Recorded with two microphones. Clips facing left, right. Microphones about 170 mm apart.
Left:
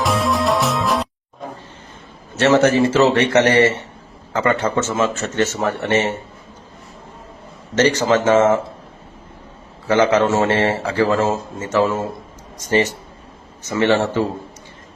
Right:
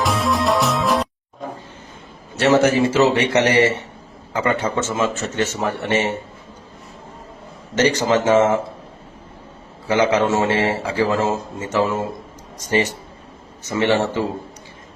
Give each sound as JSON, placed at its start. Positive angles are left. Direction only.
{"t": 0.0, "sound": "music", "side_deg": 0}
{"t": 2.3, "sound": "a man's voice", "side_deg": -10}
{"t": 7.8, "sound": "a man's voice", "side_deg": -15}
{"t": 9.8, "sound": "a man's voice", "side_deg": -10}